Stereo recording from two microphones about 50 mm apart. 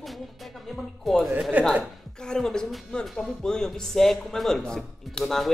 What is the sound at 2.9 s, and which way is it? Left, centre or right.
Speech, centre.